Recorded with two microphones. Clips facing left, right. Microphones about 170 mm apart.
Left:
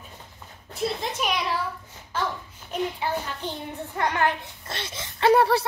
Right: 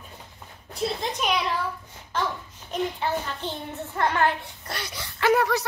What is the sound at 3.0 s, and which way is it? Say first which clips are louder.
A child's voice: right 1 dB; 15° left (ahead or behind).